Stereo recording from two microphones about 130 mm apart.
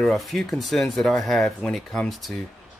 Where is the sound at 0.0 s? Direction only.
Centre (ahead or behind).